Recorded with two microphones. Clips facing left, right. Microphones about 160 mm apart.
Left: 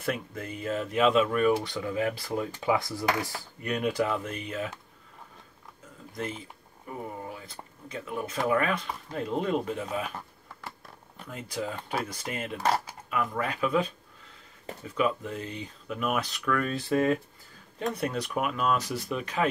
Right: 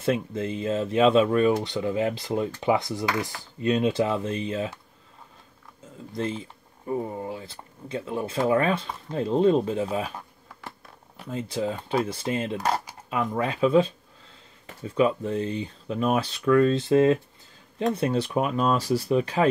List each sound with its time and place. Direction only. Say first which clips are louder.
0.0 s speech: right 7 dB; 25° right (ahead or behind)
6.1 s speech: right 6 dB; 30° right (ahead or behind)
11.2 s speech: right 6 dB; 25° right (ahead or behind)
15.0 s speech: right 6 dB; 30° right (ahead or behind)